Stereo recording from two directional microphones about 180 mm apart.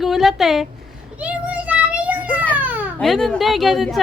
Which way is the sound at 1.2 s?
10° right (ahead or behind).